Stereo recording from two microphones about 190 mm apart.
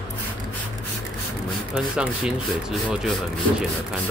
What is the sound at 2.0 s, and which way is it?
Speech, 5° right (ahead or behind).